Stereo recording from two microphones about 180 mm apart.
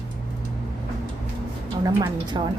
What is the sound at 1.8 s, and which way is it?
Speech, 20° right (ahead or behind).